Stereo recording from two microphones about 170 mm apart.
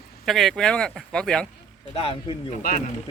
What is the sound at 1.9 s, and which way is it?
Speech, 30° left (ahead or behind).